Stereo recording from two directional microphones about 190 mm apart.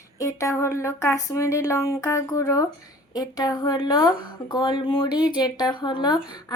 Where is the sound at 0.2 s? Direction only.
15° left (ahead or behind).